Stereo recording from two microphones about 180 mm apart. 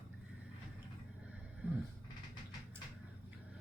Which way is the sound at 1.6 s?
10° right (ahead or behind).